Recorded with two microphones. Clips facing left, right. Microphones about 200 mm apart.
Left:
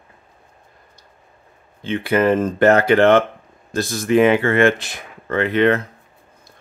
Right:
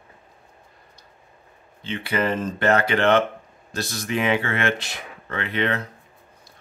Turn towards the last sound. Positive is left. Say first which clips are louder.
# left 9 dB
turn(degrees=50)  # may be behind; listen again after turning